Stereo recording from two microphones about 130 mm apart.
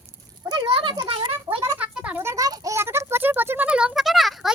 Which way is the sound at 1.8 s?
10° right (ahead or behind).